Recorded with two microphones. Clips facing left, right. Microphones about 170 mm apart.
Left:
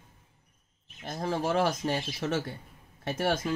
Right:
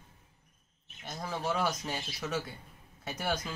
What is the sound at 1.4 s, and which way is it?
Speech, 55° left (ahead or behind).